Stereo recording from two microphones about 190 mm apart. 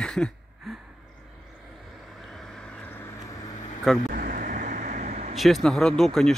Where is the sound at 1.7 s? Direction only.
Centre (ahead or behind); by 3.7 s 20° left (ahead or behind).